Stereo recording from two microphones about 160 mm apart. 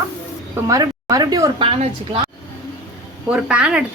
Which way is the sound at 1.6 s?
35° right (ahead or behind).